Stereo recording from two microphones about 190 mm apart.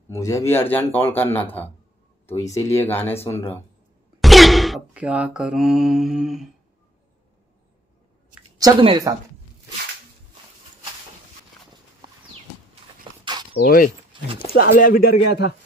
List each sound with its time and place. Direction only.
0.1 s a man's voice: 15° left (ahead or behind)
4.2 s a sound: centre (ahead or behind)
8.5 s speech: 20° right (ahead or behind)
13.2 s mechanisms: 25° right (ahead or behind)
13.5 s speech: 50° left (ahead or behind)